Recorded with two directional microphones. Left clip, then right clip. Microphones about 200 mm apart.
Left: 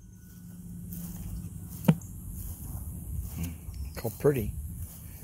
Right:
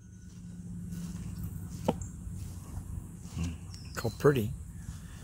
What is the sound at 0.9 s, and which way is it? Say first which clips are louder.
Vehicle: even; 60° left (ahead or behind).